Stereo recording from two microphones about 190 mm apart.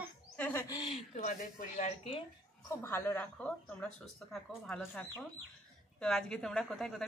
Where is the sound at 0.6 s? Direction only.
25° left (ahead or behind).